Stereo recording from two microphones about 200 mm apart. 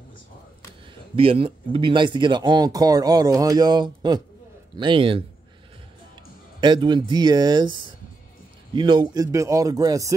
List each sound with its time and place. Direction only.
1.1 s speech: 25° right (ahead or behind)
6.6 s speech: 25° right (ahead or behind)